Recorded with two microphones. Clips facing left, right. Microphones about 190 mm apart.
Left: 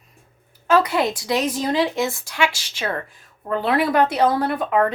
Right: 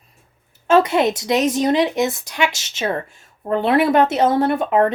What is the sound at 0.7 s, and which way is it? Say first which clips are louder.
Speech: right 3 dB; 25° right (ahead or behind).